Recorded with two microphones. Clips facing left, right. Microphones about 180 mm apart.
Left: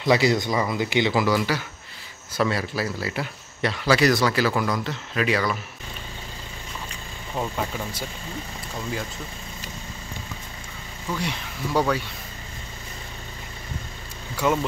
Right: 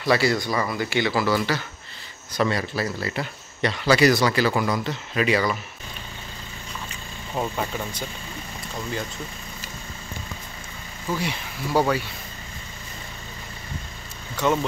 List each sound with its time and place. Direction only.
0.0 s speech: 20° left (ahead or behind); by 5.6 s centre (ahead or behind)
7.3 s speech: centre (ahead or behind)
11.1 s speech: 5° right (ahead or behind)
14.3 s speech: 5° left (ahead or behind)